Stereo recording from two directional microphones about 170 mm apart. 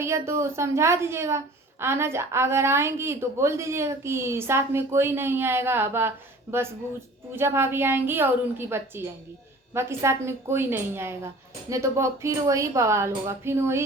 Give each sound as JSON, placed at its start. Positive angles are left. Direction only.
{"t": 0.0, "sound": "a woman's voice", "side_deg": -15}